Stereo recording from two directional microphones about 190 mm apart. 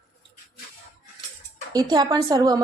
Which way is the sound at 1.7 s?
20° right (ahead or behind).